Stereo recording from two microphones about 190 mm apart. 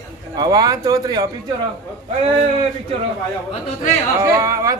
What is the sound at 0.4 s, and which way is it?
Speech, 20° right (ahead or behind).